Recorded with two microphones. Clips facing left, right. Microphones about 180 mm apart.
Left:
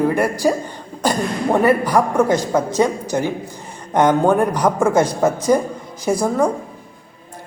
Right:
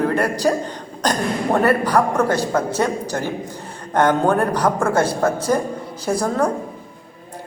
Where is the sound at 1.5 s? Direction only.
15° left (ahead or behind).